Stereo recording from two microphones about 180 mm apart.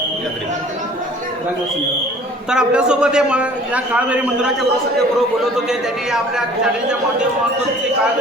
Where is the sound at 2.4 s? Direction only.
5° right (ahead or behind).